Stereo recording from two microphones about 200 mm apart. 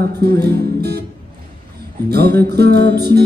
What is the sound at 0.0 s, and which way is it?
Music, 55° right (ahead or behind).